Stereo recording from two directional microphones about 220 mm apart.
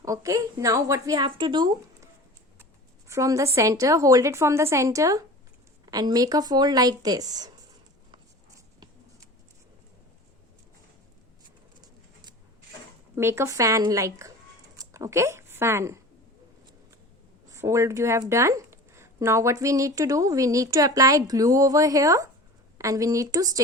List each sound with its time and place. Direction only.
0.0 s a woman's voice: 15° right (ahead or behind)
3.1 s a woman's voice: 15° right (ahead or behind)
8.1 s a sound: 20° right (ahead or behind)
13.1 s a woman's voice: 10° right (ahead or behind)
17.5 s a woman's voice: 15° right (ahead or behind)